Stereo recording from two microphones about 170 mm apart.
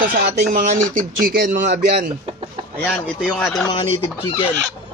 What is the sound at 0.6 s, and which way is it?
Speech, 50° right (ahead or behind).